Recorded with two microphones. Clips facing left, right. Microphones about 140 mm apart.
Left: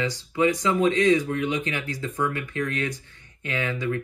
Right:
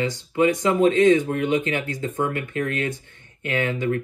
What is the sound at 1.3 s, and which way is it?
Speech, 45° right (ahead or behind).